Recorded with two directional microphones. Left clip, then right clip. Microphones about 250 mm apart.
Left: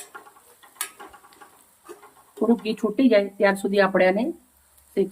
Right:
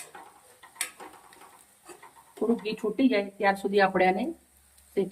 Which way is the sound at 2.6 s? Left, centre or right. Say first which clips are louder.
Left 4 dB; centre.